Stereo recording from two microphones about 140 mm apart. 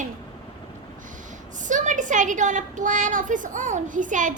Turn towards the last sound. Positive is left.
turn(degrees=-65)  # may be behind; listen again after turning